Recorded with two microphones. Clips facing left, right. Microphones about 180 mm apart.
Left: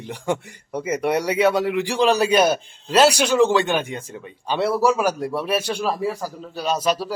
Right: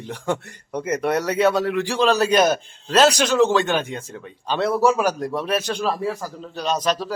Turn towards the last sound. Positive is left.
turn(degrees=10)  # may be behind; listen again after turning